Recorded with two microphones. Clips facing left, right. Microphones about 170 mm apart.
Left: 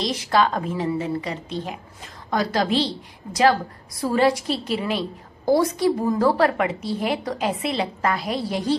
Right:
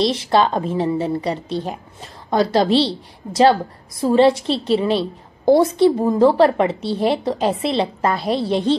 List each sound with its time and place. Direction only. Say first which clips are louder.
0.0 s a woman's voice: right 4 dB; 30° right (ahead or behind)
4.0 s a woman's voice: right 6 dB; 25° right (ahead or behind)